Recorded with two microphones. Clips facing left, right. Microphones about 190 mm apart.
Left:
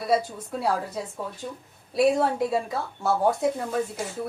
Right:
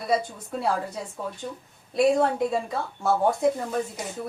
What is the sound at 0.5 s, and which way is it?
Speech, 5° left (ahead or behind).